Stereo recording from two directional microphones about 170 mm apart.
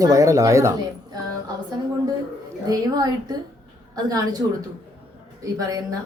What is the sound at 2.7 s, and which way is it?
Speech, 20° right (ahead or behind).